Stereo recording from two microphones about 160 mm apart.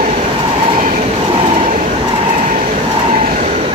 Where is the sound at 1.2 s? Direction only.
40° right (ahead or behind).